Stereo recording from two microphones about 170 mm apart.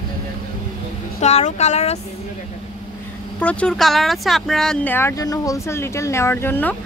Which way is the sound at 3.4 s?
5° left (ahead or behind).